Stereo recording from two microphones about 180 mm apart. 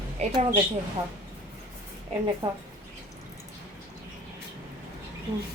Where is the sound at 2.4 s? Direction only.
30° right (ahead or behind).